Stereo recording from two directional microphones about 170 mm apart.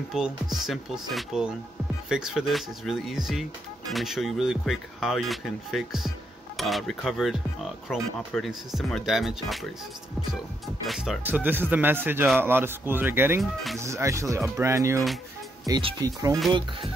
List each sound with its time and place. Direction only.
0.1 s speech: centre (ahead or behind)
10.9 s speech: 5° right (ahead or behind); by 16.1 s 25° right (ahead or behind)